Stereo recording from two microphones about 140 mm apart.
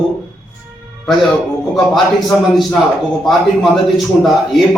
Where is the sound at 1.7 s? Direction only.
Centre (ahead or behind).